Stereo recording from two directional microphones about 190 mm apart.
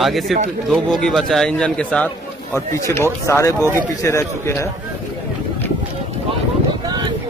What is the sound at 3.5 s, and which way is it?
Speech, 15° right (ahead or behind).